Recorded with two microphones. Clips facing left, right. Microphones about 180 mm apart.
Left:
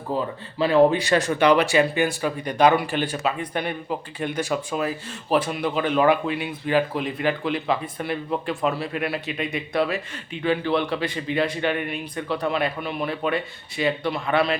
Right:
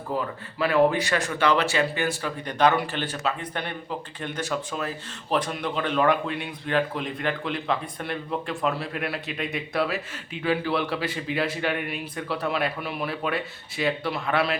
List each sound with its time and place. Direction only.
0.1 s speech: 30° left (ahead or behind)
1.4 s speech: 15° left (ahead or behind); by 14.6 s centre (ahead or behind)